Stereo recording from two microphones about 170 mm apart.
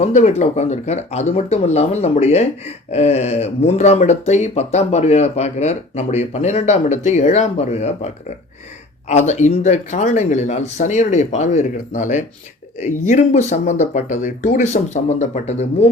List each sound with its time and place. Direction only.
0.0 s speech: 40° left (ahead or behind)